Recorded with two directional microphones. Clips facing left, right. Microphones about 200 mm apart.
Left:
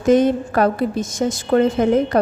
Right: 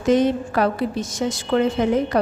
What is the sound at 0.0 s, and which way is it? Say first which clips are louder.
A woman's voice: left 3 dB; 50° left (ahead or behind).